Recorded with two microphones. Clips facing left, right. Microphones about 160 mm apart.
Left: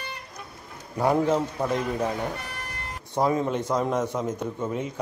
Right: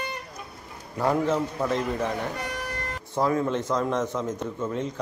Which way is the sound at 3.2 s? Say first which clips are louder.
Even; 20° left (ahead or behind).